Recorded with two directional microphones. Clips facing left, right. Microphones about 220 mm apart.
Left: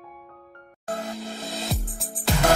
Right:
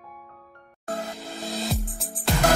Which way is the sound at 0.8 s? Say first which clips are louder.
Left 1 dB; centre (ahead or behind).